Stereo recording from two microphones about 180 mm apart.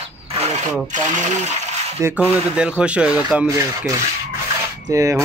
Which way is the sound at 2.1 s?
10° right (ahead or behind).